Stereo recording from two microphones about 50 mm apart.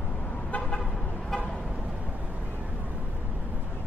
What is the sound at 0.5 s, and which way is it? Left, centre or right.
Vehicle, left.